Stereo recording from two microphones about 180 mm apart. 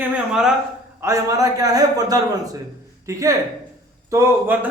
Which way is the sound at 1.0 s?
15° right (ahead or behind).